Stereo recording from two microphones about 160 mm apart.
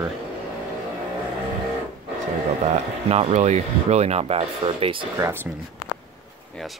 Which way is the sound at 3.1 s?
40° right (ahead or behind).